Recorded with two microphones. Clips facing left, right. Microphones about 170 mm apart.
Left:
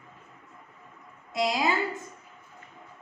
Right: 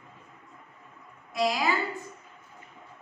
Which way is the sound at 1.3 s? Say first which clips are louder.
Even; 20° left (ahead or behind).